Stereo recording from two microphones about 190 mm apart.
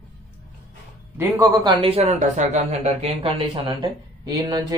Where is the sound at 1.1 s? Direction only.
15° right (ahead or behind); by 3.3 s 30° right (ahead or behind).